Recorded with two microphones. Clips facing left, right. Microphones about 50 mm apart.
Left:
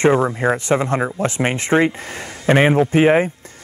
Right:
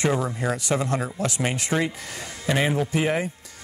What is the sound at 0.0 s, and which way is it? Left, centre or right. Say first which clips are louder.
Speech: left 9 dB; left.